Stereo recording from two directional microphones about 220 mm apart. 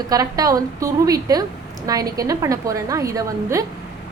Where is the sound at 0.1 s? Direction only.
15° right (ahead or behind).